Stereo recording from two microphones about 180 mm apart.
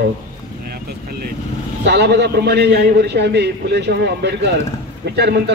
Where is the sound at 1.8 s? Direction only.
70° right (ahead or behind).